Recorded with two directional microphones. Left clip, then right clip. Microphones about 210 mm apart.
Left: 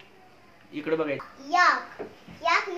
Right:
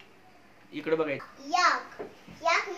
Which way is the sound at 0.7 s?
5° right (ahead or behind).